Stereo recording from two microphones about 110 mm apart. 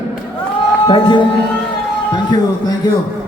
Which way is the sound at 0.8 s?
45° left (ahead or behind).